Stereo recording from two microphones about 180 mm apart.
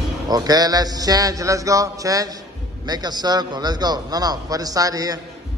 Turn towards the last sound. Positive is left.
turn(degrees=-20)  # may be behind; listen again after turning